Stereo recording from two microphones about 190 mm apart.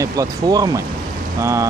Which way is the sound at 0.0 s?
20° right (ahead or behind).